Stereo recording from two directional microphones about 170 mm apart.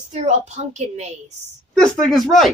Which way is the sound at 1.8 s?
Centre (ahead or behind).